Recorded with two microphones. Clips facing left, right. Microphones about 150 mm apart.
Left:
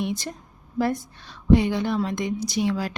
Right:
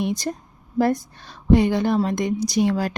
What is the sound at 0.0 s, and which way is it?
A woman's voice, 40° right (ahead or behind).